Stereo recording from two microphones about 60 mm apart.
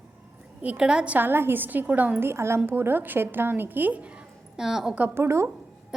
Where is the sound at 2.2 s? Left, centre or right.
Right.